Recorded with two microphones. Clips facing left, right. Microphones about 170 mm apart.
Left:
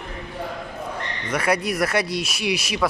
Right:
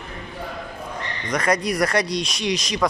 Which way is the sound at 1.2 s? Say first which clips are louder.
Right 1 dB; 5° left (ahead or behind).